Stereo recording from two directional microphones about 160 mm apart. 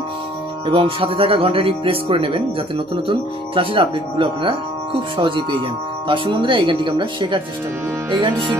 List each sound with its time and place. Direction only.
0.7 s speech: 35° right (ahead or behind)